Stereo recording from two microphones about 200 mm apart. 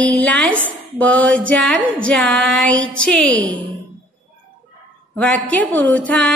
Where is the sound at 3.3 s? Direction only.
75° right (ahead or behind).